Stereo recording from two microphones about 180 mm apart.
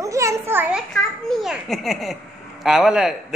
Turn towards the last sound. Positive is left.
turn(degrees=-5)  # may be behind; listen again after turning